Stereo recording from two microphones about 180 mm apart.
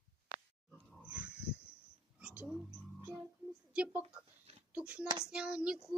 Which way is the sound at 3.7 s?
5° right (ahead or behind).